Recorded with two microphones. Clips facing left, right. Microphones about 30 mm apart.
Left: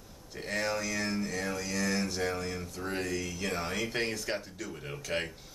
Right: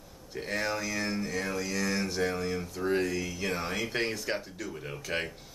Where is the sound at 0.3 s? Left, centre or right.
Centre.